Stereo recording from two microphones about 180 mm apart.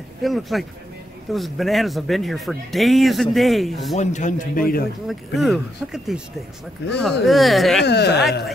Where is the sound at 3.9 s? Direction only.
40° left (ahead or behind).